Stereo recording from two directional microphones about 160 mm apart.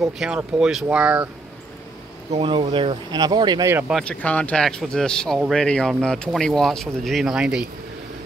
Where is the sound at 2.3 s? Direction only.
35° right (ahead or behind).